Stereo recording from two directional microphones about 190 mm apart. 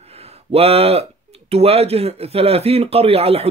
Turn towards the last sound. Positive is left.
turn(degrees=-30)  # may be behind; listen again after turning